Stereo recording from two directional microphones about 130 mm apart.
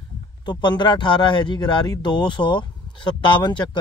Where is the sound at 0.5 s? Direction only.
35° left (ahead or behind).